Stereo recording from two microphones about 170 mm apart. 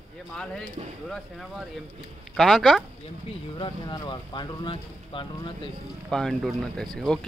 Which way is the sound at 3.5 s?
25° left (ahead or behind).